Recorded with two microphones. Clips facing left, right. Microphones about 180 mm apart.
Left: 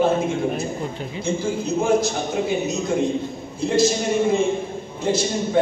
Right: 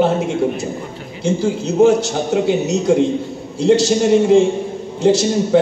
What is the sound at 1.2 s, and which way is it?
A man's voice, 70° right (ahead or behind).